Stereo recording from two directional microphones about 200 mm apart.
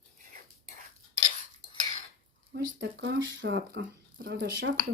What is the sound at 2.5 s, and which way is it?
Speech, 65° right (ahead or behind).